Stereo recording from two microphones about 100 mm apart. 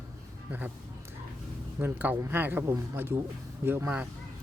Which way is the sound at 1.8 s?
20° right (ahead or behind).